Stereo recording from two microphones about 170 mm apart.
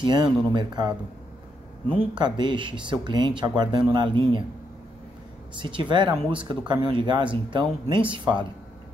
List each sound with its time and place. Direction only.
0.0 s speech: 25° right (ahead or behind)
2.1 s speech: 25° right (ahead or behind)
5.6 s speech: 30° right (ahead or behind)